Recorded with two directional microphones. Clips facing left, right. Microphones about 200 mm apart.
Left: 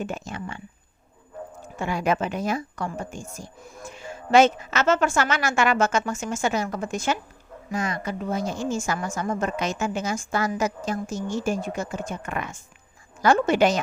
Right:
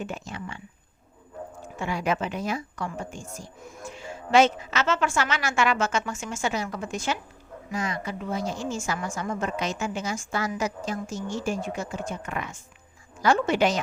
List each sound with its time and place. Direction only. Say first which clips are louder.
0.0 s a woman's voice: left 3 dB; 45° left (ahead or behind)
1.8 s a woman's voice: left 3 dB; 45° left (ahead or behind)